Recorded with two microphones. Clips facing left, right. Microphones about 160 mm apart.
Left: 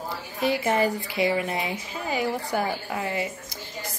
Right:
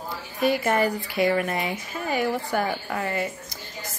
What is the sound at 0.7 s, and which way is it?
Speech, 20° left (ahead or behind).